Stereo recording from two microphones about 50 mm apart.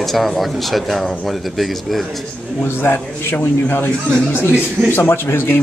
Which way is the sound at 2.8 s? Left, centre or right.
Left.